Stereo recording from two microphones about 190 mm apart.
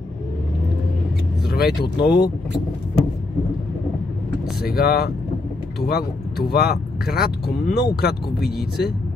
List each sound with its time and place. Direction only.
1.5 s speech: 60° left (ahead or behind)
4.6 s speech: 55° left (ahead or behind)